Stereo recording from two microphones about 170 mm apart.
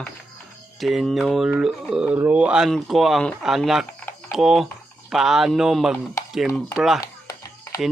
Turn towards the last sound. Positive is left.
turn(degrees=20)  # may be behind; listen again after turning